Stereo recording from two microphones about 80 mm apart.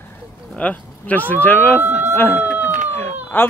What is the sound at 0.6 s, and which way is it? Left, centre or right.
Speech, centre.